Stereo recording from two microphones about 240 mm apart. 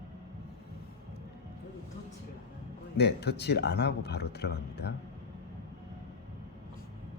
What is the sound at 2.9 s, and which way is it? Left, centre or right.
A man's voice, left.